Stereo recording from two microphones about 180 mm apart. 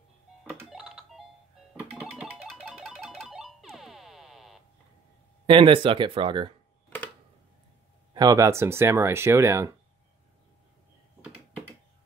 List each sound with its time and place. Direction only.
0.5 s music: 5° right (ahead or behind)
5.5 s speech: 30° right (ahead or behind)
8.1 s speech: 20° right (ahead or behind)